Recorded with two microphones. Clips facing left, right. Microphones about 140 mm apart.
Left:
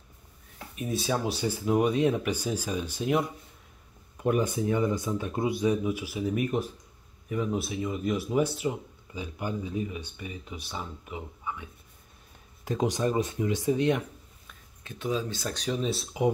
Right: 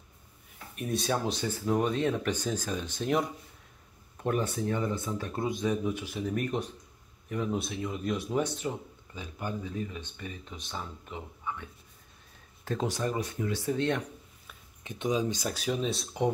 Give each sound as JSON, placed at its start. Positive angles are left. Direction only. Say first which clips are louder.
{"t": 0.7, "sound": "speech", "louder": "left 1 dB", "side_deg": 0}
{"t": 14.8, "sound": "speech", "louder": "right 1 dB", "side_deg": -20}